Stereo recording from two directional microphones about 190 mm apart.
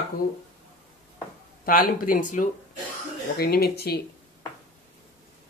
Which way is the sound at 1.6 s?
50° left (ahead or behind).